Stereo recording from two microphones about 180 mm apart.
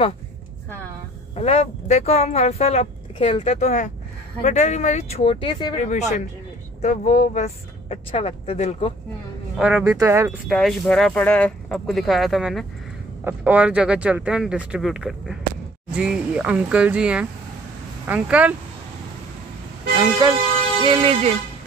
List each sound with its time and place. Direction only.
1.3 s speech: 35° left (ahead or behind)
5.8 s speech: 40° left (ahead or behind)
9.6 s speech: 5° right (ahead or behind)
9.8 s speech: 15° right (ahead or behind)
10.5 s speech: centre (ahead or behind)
20.0 s speech: 20° right (ahead or behind)